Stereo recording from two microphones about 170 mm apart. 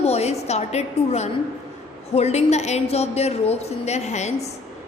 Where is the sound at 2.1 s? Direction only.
40° left (ahead or behind).